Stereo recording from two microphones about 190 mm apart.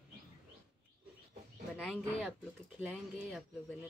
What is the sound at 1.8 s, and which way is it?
Speech, centre (ahead or behind).